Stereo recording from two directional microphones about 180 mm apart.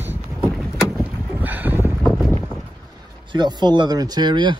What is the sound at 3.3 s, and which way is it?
Speech, 25° right (ahead or behind).